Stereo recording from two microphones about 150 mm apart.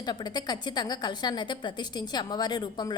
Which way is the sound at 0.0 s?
30° left (ahead or behind).